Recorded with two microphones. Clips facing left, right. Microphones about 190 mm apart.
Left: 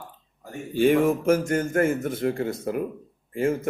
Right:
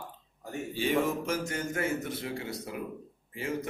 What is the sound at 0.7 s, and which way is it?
Speech, 50° left (ahead or behind).